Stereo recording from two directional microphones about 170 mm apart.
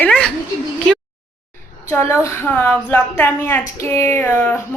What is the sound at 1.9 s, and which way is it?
A woman's voice, 15° left (ahead or behind).